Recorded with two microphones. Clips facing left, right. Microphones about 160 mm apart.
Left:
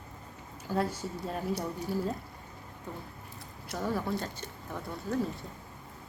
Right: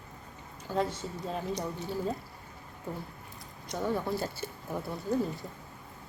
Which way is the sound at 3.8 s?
Centre (ahead or behind).